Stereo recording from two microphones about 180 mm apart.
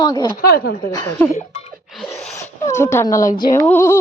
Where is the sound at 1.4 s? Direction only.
35° left (ahead or behind).